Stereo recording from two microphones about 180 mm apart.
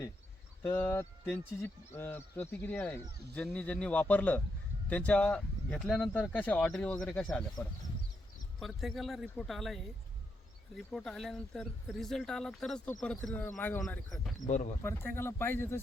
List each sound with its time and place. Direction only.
0.6 s speech: 15° left (ahead or behind)
8.5 s speech: centre (ahead or behind)
14.4 s speech: 45° left (ahead or behind)
14.8 s speech: 15° left (ahead or behind)